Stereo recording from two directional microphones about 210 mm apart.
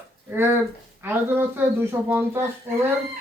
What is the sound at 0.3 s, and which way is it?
Speech, 10° right (ahead or behind).